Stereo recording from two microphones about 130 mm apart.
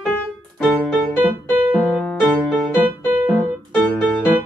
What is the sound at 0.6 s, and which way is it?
Music, 10° right (ahead or behind).